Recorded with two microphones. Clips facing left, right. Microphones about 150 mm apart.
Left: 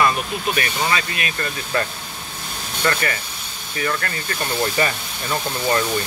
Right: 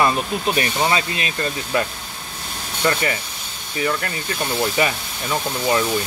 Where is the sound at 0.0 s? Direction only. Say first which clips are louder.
Right 1 dB; 25° right (ahead or behind).